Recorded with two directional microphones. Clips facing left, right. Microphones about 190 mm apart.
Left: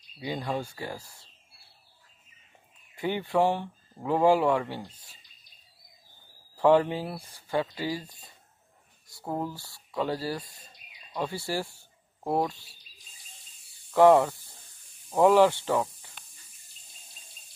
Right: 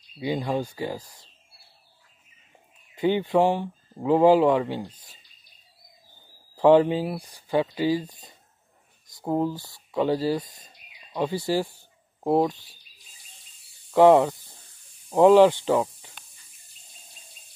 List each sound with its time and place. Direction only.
0.2 s speech: 15° right (ahead or behind)
3.0 s speech: 20° right (ahead or behind)
6.5 s speech: 20° right (ahead or behind)
13.9 s speech: 20° right (ahead or behind)